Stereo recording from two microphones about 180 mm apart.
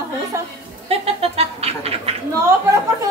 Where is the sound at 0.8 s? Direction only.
35° right (ahead or behind).